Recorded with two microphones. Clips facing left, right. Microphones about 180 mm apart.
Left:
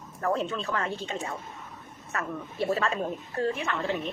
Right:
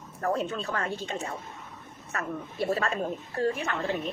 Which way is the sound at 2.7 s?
40° right (ahead or behind).